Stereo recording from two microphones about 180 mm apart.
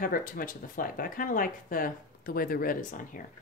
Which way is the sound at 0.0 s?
50° left (ahead or behind).